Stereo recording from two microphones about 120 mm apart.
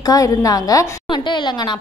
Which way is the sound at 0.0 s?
30° left (ahead or behind).